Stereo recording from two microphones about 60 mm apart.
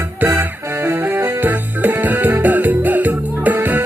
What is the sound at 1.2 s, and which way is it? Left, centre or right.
Music, right.